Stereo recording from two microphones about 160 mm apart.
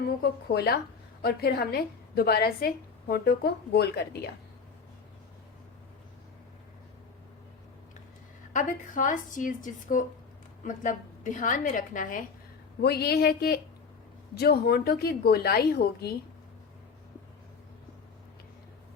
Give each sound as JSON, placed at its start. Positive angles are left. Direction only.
{"t": 0.4, "sound": "a woman's voice", "side_deg": 85}
{"t": 8.5, "sound": "a woman's voice", "side_deg": 55}
{"t": 12.8, "sound": "a woman's voice", "side_deg": 80}